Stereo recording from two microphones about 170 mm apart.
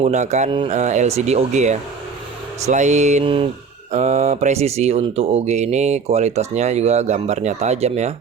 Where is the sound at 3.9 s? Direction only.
40° right (ahead or behind).